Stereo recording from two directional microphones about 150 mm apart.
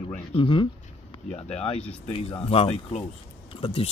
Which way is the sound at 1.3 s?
45° left (ahead or behind).